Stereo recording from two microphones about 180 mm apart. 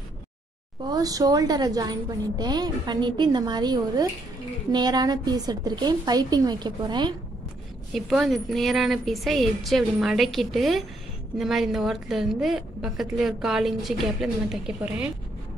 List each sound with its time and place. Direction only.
0.8 s a woman's voice: 20° right (ahead or behind)
7.9 s a woman's voice: centre (ahead or behind)